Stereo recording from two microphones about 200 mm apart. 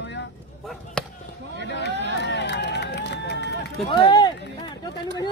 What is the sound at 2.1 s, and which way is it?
Run, 60° left (ahead or behind).